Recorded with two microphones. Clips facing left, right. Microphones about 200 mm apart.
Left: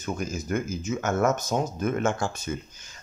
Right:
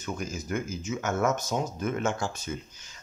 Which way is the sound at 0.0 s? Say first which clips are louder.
Left 3 dB; 45° left (ahead or behind).